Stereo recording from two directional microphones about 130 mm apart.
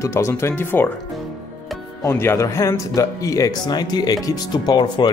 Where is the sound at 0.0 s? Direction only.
20° left (ahead or behind).